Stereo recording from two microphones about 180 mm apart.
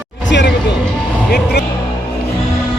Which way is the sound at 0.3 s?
80° left.